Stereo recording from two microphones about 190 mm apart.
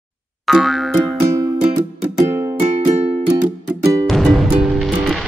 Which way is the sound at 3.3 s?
15° right (ahead or behind).